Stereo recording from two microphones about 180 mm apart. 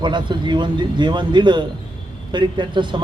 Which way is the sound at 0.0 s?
25° right (ahead or behind).